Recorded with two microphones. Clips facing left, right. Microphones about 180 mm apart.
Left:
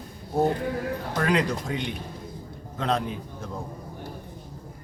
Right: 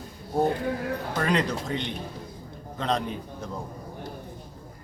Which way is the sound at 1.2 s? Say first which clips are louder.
Left 2 dB; 10° left (ahead or behind).